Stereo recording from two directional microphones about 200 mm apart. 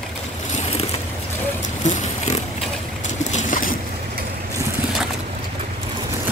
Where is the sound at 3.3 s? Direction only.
40° left (ahead or behind).